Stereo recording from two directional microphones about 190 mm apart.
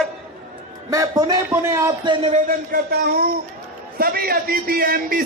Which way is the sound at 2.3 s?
45° right (ahead or behind).